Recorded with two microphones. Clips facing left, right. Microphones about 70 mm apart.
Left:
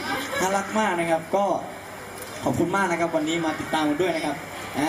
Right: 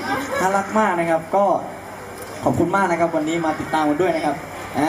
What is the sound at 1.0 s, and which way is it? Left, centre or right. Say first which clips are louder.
Speech: right 4 dB; centre.